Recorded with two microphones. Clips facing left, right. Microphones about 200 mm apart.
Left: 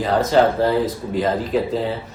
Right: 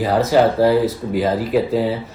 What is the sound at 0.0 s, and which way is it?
Speech, 5° right (ahead or behind).